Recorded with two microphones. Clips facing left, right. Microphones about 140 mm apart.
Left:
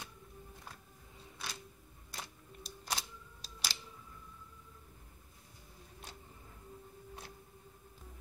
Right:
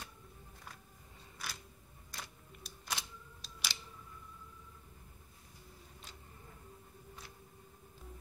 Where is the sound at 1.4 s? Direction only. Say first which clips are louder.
Left 1 dB; 25° left (ahead or behind).